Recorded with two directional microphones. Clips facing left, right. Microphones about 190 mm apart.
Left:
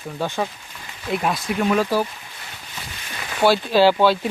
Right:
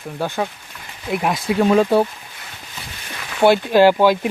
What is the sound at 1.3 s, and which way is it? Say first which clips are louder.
Speech: right 6 dB; 25° right (ahead or behind).